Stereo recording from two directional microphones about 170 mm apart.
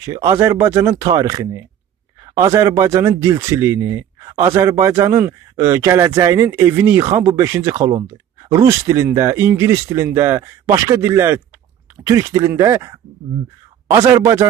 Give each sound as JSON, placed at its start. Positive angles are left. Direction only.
{"t": 0.0, "sound": "speech", "side_deg": -20}